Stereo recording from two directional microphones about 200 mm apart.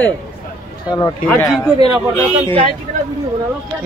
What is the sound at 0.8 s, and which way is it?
Speech, 20° left (ahead or behind).